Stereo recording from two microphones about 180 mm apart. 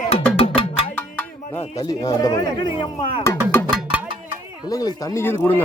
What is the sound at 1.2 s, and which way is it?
Music, 15° left (ahead or behind).